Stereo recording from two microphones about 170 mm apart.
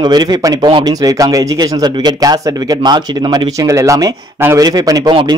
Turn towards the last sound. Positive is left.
turn(degrees=-20)  # may be behind; listen again after turning